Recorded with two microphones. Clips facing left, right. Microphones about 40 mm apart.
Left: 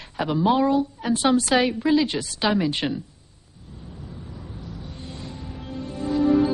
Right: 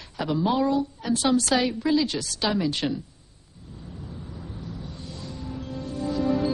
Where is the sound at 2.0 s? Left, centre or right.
Left.